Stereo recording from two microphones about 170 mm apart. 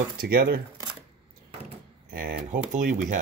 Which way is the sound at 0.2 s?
65° right (ahead or behind).